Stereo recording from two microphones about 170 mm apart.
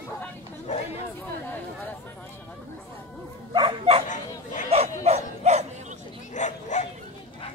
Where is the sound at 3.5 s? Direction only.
30° right (ahead or behind).